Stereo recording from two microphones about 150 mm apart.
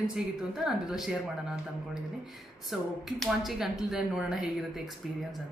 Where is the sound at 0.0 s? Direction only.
5° right (ahead or behind).